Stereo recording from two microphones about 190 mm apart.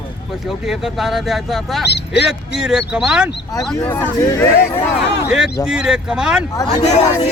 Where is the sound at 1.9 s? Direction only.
60° left (ahead or behind).